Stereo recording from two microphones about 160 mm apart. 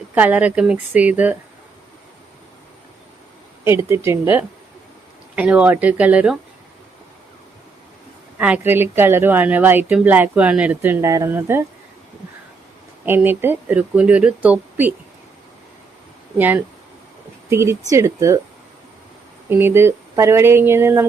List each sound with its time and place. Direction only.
0.1 s a woman's voice: 10° right (ahead or behind)
3.6 s a woman's voice: 15° right (ahead or behind)
8.4 s a woman's voice: 10° right (ahead or behind)
13.1 s a woman's voice: 15° right (ahead or behind)
16.4 s a woman's voice: 10° right (ahead or behind)
19.5 s a woman's voice: 15° right (ahead or behind)